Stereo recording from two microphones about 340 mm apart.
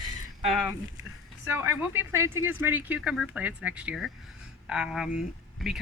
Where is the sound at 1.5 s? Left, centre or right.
Centre.